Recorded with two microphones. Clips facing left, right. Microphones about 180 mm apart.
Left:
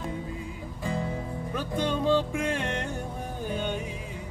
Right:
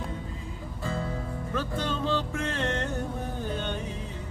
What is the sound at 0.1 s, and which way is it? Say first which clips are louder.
Music: left 3 dB; 15° left (ahead or behind).